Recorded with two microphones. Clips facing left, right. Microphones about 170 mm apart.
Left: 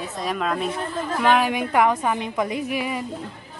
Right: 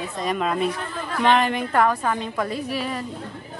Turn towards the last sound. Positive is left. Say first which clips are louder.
# left 1 dB
turn(degrees=15)  # may be behind; listen again after turning